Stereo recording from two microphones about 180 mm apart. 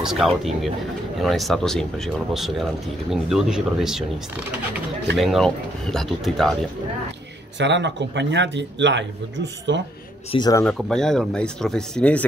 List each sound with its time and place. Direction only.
0.0 s speech: centre (ahead or behind)
5.1 s speech: centre (ahead or behind)
7.5 s a man's voice: 75° right (ahead or behind)
10.3 s speech: 25° left (ahead or behind)
10.6 s speech: 5° left (ahead or behind)